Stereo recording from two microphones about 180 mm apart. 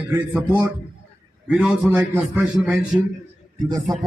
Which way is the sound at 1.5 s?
5° right (ahead or behind).